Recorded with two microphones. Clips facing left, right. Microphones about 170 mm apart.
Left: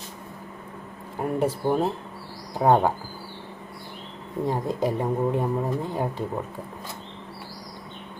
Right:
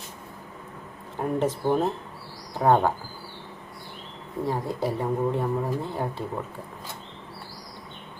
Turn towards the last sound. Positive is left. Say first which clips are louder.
# left 2 dB
turn(degrees=15)  # may be behind; listen again after turning